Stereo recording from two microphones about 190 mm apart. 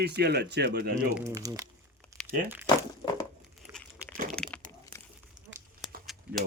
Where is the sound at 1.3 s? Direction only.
20° right (ahead or behind).